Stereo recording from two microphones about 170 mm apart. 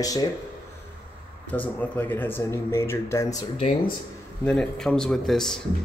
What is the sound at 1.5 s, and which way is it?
Speech, 10° left (ahead or behind).